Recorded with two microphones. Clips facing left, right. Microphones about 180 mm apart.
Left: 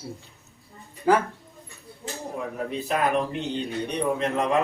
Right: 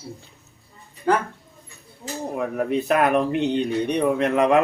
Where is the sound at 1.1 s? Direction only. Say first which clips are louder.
Even; 5° left (ahead or behind).